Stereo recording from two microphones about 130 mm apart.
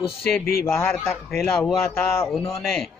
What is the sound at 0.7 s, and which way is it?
Speech, 20° left (ahead or behind).